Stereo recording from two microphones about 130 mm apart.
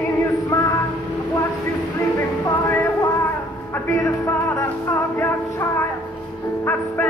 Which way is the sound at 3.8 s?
20° left (ahead or behind).